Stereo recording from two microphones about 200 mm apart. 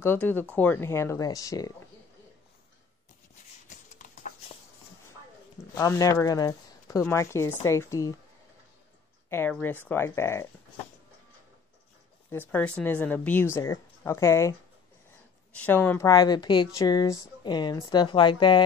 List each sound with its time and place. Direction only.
0.0 s speech: 10° left (ahead or behind)
3.6 s a sound: 40° left (ahead or behind)
5.8 s speech: 15° left (ahead or behind)
9.3 s speech: 10° left (ahead or behind)
12.3 s speech: 10° left (ahead or behind)
15.5 s a woman's voice: 10° left (ahead or behind)